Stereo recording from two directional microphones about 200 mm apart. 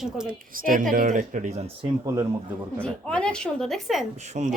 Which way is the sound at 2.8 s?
5° left (ahead or behind).